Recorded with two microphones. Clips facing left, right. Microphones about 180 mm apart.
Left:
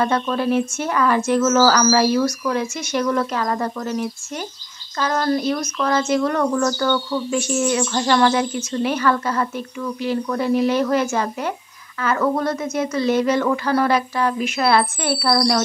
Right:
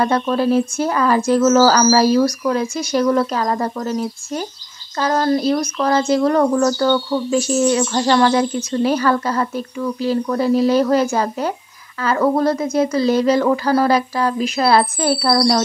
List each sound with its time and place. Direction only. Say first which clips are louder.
0.0 s speech: right 3 dB; 35° right (ahead or behind)